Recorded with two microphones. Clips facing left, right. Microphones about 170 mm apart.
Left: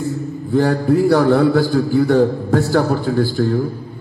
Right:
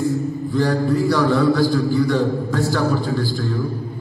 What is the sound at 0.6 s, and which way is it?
A man's voice, 55° left (ahead or behind).